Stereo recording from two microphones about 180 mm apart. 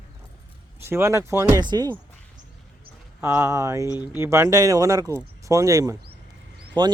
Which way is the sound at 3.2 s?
15° right (ahead or behind).